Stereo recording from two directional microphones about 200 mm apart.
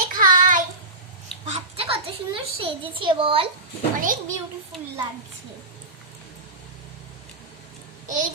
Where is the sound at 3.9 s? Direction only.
45° right (ahead or behind).